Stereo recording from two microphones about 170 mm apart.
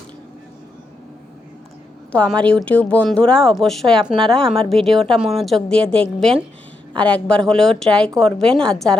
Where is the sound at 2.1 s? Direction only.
5° left (ahead or behind).